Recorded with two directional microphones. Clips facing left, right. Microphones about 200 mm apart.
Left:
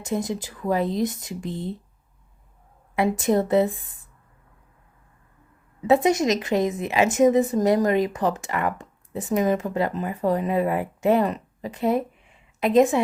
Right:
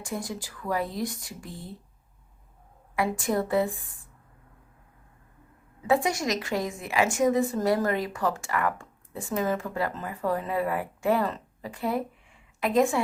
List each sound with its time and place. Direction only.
0.0 s a woman's voice: 20° left (ahead or behind)
2.9 s a woman's voice: 25° left (ahead or behind)
5.9 s a woman's voice: 20° left (ahead or behind)